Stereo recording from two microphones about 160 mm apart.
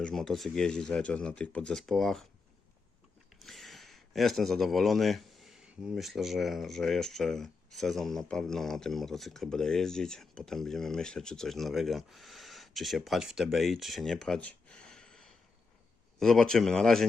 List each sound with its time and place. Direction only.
0.0 s speech: 5° left (ahead or behind)
3.4 s speech: centre (ahead or behind)